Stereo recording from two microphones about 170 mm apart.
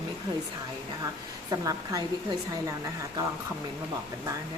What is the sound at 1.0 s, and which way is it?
A woman's voice, 20° right (ahead or behind).